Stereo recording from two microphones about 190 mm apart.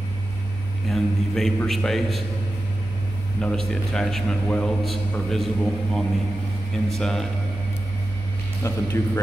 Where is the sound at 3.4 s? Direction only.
5° left (ahead or behind).